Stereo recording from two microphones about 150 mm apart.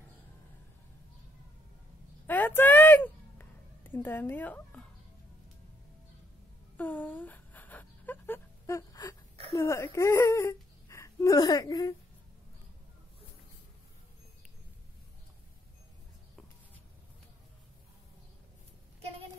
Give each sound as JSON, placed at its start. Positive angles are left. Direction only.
{"t": 2.2, "sound": "a sound", "side_deg": 15}
{"t": 6.8, "sound": "whimper", "side_deg": 10}
{"t": 9.5, "sound": "speech", "side_deg": 20}